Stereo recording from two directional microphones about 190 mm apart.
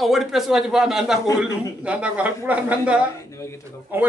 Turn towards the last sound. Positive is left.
turn(degrees=-10)  # may be behind; listen again after turning